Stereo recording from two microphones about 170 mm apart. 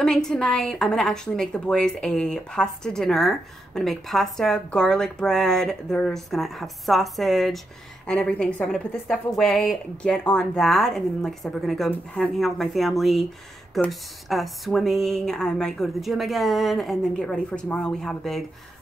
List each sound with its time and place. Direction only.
0.0 s a woman's voice: 5° left (ahead or behind)